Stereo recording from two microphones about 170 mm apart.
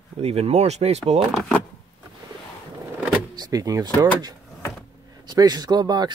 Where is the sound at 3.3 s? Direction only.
20° right (ahead or behind).